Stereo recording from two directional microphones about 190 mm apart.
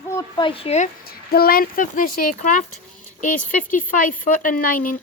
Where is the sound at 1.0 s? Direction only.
55° left (ahead or behind).